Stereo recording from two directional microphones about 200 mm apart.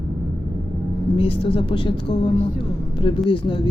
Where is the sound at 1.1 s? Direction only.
25° left (ahead or behind).